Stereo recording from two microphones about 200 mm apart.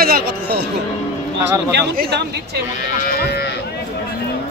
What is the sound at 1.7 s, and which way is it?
Speech, 55° right (ahead or behind).